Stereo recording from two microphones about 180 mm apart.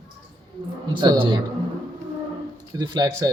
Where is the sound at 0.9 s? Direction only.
25° right (ahead or behind).